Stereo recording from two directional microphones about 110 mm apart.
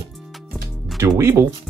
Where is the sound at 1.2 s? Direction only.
25° right (ahead or behind).